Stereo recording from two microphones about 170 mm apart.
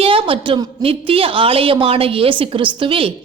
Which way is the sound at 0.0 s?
30° right (ahead or behind).